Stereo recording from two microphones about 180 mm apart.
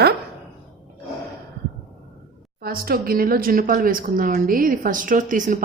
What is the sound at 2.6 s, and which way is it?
Speech, 55° right (ahead or behind).